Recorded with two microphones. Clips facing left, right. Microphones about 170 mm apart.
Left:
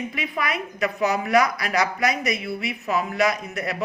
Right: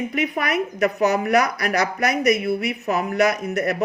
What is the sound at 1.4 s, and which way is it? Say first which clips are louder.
Speech: right 2 dB; 60° right (ahead or behind).